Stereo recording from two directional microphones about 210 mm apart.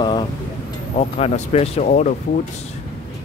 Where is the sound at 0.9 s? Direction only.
30° left (ahead or behind).